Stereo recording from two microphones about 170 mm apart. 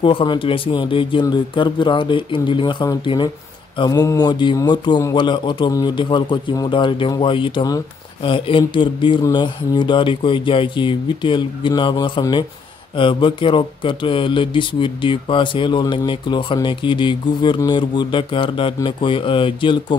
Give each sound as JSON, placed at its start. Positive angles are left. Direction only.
{"t": 0.0, "sound": "speech", "side_deg": 30}